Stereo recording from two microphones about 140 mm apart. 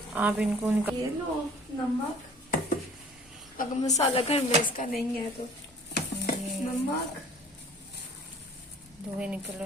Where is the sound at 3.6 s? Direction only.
85° left.